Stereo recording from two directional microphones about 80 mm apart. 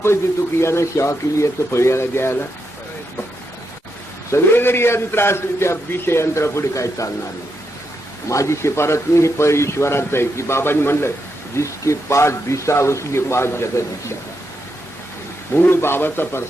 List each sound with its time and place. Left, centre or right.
0.6 s a man's voice: left
4.3 s a man's voice: left
8.3 s a man's voice: left
15.5 s a man's voice: left